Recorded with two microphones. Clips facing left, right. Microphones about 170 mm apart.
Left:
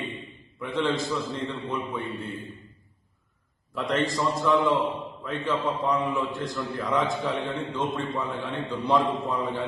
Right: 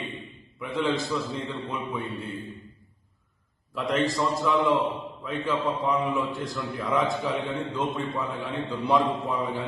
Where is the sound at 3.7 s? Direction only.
Centre (ahead or behind).